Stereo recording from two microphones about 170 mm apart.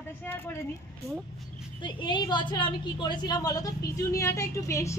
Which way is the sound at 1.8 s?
25° left (ahead or behind).